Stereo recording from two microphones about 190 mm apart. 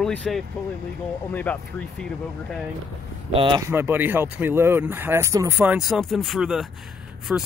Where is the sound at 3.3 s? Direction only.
25° right (ahead or behind).